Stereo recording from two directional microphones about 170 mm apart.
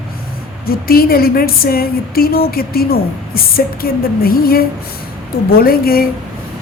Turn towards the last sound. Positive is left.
turn(degrees=60)  # may be behind; listen again after turning